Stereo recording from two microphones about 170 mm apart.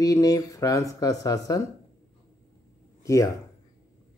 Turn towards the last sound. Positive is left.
turn(degrees=20)  # may be behind; listen again after turning